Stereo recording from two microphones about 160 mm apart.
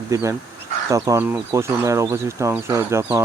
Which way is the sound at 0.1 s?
20° right (ahead or behind).